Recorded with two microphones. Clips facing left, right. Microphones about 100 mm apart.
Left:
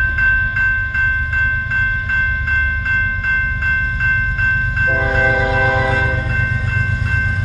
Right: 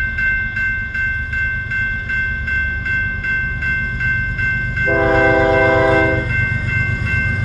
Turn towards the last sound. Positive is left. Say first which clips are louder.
# right 4 dB
turn(degrees=-40)  # may be behind; listen again after turning